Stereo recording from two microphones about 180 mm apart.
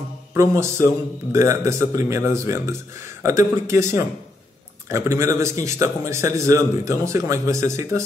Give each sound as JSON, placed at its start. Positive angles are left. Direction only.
{"t": 0.3, "sound": "speech", "side_deg": -15}